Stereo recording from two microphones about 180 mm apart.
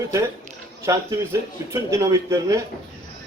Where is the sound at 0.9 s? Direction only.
15° right (ahead or behind).